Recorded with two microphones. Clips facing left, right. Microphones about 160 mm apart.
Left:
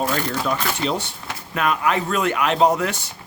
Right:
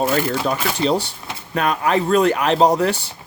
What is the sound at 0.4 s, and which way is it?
Speech, 35° right (ahead or behind).